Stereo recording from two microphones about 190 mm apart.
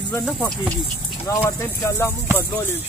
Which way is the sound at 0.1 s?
10° left (ahead or behind).